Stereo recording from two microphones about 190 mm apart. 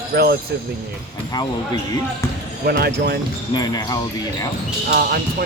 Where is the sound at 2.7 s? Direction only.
55° right (ahead or behind).